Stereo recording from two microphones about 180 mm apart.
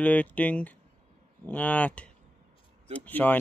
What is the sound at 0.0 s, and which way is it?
Speech, 10° left (ahead or behind).